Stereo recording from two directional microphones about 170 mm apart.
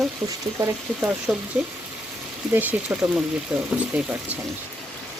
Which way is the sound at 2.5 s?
10° right (ahead or behind).